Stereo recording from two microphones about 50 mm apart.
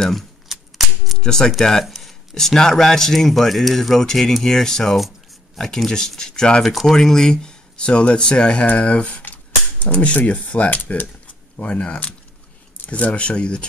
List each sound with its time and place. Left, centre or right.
0.5 s a sound: centre
1.2 s speech: centre
6.6 s speech: centre; by 13.7 s left